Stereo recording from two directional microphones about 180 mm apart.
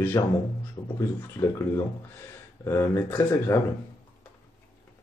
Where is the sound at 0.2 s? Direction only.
20° left (ahead or behind).